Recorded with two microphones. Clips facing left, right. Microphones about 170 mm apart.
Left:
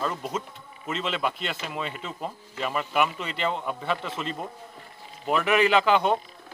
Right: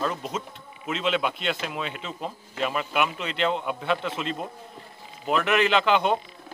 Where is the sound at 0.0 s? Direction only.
Centre (ahead or behind).